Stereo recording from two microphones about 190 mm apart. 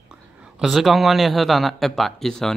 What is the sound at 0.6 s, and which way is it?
Speech, centre (ahead or behind).